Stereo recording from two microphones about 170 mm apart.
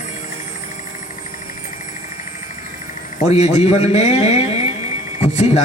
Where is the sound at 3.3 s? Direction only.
40° left (ahead or behind).